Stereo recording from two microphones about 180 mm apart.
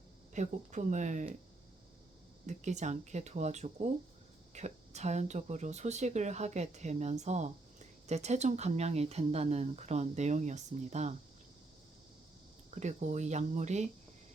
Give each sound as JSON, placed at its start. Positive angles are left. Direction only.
{"t": 0.3, "sound": "speech", "side_deg": -45}
{"t": 2.5, "sound": "speech", "side_deg": -40}
{"t": 12.7, "sound": "speech", "side_deg": -40}